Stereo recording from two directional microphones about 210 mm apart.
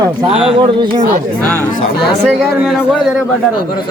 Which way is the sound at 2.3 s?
5° right (ahead or behind).